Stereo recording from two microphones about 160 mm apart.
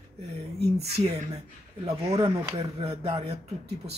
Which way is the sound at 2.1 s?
20° right (ahead or behind).